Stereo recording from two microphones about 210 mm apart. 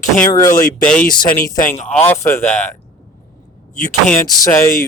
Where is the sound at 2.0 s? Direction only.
10° left (ahead or behind).